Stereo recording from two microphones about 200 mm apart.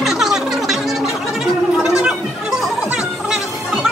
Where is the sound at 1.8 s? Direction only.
5° right (ahead or behind).